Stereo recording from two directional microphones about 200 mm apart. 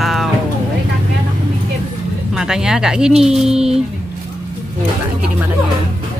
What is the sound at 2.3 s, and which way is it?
Speech, 5° right (ahead or behind).